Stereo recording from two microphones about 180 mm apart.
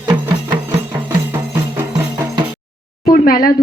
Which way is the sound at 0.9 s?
10° right (ahead or behind).